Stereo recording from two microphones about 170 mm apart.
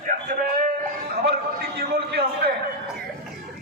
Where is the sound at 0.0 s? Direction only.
50° right (ahead or behind).